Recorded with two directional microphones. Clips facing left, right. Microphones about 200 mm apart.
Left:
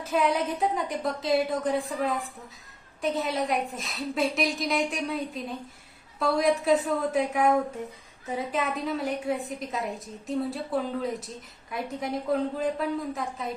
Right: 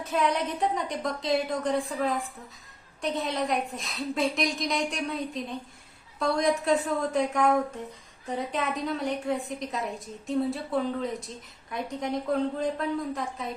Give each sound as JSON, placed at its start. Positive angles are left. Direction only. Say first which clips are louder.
{"t": 0.0, "sound": "a woman's voice", "louder": "left 1 dB", "side_deg": 0}